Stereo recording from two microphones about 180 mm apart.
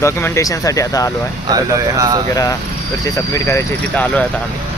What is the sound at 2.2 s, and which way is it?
Speech, 20° left (ahead or behind).